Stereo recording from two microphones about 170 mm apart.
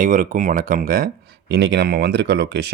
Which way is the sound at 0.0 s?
50° right (ahead or behind).